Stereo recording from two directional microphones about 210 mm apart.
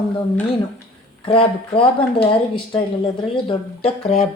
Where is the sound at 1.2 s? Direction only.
25° left (ahead or behind).